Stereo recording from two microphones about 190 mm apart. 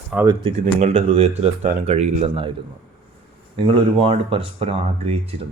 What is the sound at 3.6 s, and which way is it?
Speech, 30° right (ahead or behind).